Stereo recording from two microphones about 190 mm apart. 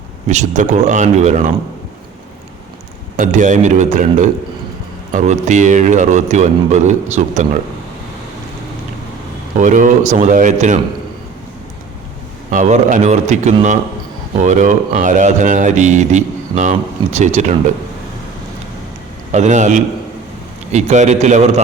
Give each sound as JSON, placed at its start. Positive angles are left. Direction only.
{"t": 0.3, "sound": "speech", "side_deg": -40}
{"t": 3.2, "sound": "speech", "side_deg": -40}
{"t": 9.6, "sound": "speech", "side_deg": -40}
{"t": 12.5, "sound": "speech", "side_deg": -40}
{"t": 19.3, "sound": "speech", "side_deg": -40}